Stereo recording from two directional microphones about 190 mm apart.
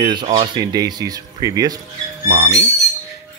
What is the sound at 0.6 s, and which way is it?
Speech, 20° right (ahead or behind).